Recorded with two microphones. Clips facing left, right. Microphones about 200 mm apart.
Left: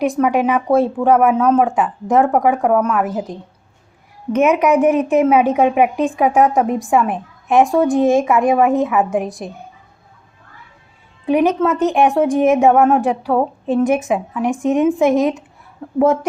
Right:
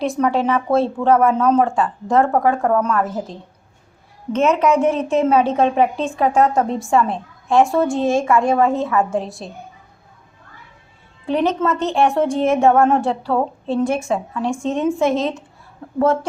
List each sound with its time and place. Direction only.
0.0 s a woman's voice: 15° left (ahead or behind)
11.3 s a woman's voice: 10° left (ahead or behind)